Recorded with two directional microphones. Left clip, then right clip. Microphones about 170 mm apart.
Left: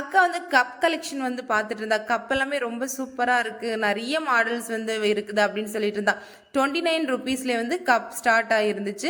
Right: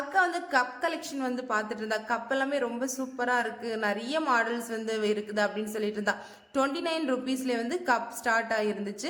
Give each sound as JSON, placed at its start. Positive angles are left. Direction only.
{"t": 0.1, "sound": "a woman's voice", "side_deg": 20}